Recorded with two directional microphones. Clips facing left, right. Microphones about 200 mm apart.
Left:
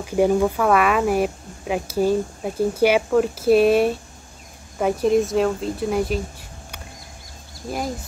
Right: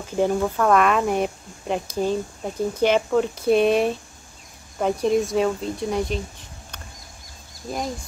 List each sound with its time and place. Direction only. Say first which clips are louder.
0.0 s speech: left 4 dB; 10° left (ahead or behind)